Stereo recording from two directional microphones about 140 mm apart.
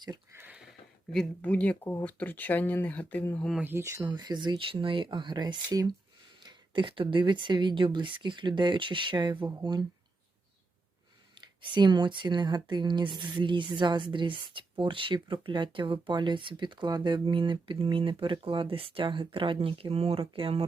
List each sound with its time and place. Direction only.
0.0 s a sound: 30° right (ahead or behind)
0.3 s a sound: 10° right (ahead or behind)
1.1 s speech: 5° left (ahead or behind)
3.6 s speech: 15° right (ahead or behind)
4.1 s speech: 30° right (ahead or behind)
11.3 s speech: 35° right (ahead or behind)